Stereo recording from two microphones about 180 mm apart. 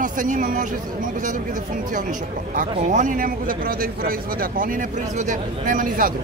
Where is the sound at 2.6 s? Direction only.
45° right (ahead or behind).